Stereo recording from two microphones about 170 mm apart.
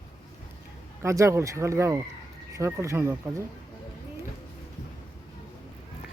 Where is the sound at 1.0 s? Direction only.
15° right (ahead or behind).